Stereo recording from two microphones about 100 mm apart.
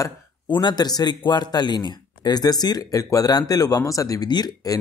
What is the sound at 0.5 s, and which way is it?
Speech, 50° left (ahead or behind).